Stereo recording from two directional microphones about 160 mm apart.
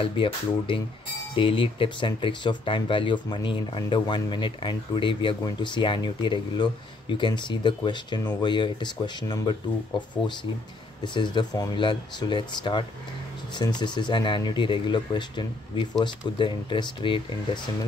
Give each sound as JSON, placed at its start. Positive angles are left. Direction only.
{"t": 0.0, "sound": "speech", "side_deg": 35}